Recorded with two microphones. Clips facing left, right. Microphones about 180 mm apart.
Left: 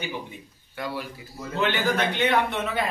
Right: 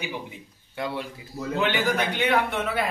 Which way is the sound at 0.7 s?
25° right (ahead or behind).